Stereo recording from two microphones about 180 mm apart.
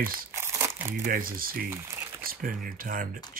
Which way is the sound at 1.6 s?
15° right (ahead or behind).